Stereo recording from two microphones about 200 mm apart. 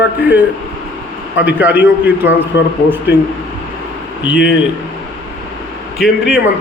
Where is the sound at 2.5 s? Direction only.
65° left (ahead or behind).